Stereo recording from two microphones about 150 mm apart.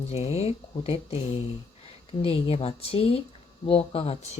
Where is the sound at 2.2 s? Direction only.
40° left (ahead or behind).